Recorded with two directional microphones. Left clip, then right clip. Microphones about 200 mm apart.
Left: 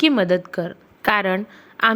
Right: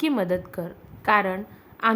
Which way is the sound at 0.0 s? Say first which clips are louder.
Left 7 dB; 15° left (ahead or behind).